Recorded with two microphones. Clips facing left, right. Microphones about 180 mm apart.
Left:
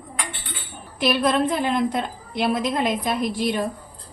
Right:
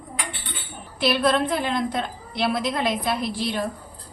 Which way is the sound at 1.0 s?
15° left (ahead or behind).